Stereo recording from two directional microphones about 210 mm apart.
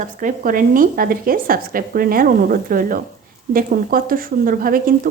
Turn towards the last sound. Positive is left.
turn(degrees=-40)  # may be behind; listen again after turning